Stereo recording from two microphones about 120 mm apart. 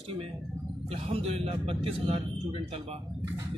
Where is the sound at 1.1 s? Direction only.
55° right (ahead or behind).